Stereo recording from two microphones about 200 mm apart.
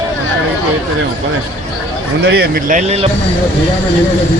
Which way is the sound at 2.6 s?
40° right (ahead or behind).